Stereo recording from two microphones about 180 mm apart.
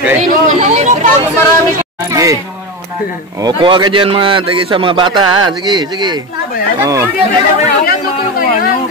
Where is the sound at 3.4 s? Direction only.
25° right (ahead or behind).